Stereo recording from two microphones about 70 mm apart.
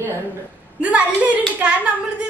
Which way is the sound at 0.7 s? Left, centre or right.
Centre.